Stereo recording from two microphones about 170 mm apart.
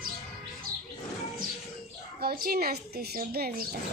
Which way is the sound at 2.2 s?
65° right (ahead or behind).